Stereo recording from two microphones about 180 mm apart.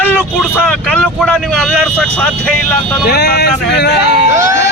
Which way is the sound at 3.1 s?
65° left (ahead or behind).